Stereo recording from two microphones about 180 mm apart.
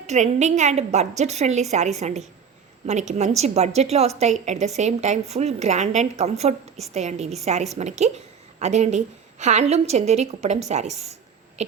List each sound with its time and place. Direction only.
0.1 s a woman's voice: 40° right (ahead or behind)